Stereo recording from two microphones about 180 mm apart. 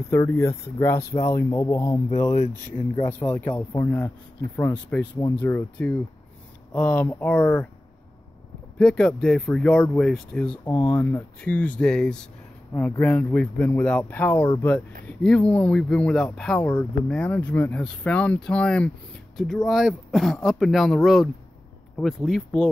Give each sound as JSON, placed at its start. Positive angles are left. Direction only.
{"t": 0.1, "sound": "speech", "side_deg": 15}
{"t": 3.1, "sound": "speech", "side_deg": 10}
{"t": 8.7, "sound": "speech", "side_deg": 5}